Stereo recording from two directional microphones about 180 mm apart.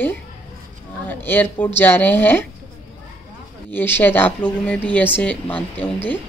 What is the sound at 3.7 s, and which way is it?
A woman's voice, 10° left (ahead or behind).